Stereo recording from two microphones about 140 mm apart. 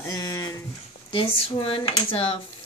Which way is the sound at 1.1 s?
40° left (ahead or behind).